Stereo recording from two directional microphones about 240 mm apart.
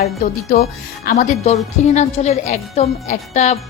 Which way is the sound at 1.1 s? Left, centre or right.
Left.